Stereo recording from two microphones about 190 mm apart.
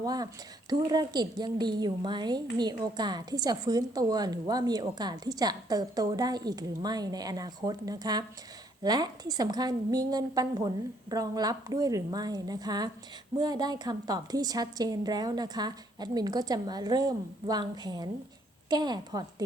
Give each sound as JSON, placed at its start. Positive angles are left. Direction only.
{"t": 0.0, "sound": "a woman's voice", "side_deg": -20}